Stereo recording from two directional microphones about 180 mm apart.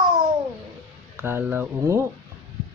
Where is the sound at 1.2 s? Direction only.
10° right (ahead or behind).